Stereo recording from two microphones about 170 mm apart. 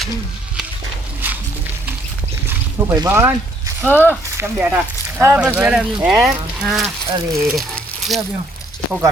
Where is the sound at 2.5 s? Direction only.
20° right (ahead or behind).